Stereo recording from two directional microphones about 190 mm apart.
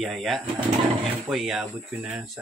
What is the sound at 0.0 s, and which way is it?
Speech, centre (ahead or behind).